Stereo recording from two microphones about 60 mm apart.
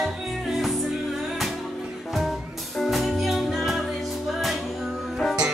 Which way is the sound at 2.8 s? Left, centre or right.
Centre.